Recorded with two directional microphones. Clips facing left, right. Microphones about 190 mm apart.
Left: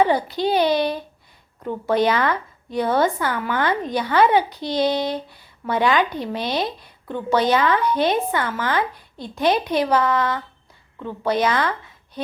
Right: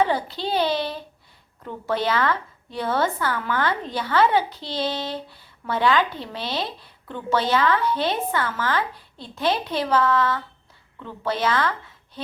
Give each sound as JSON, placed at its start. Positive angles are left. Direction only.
{"t": 0.0, "sound": "a woman's voice", "side_deg": 15}